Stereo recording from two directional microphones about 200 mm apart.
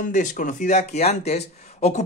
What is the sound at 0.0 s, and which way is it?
Speech, 40° left (ahead or behind).